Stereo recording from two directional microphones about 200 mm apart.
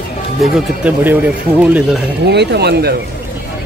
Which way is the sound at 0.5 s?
5° right (ahead or behind).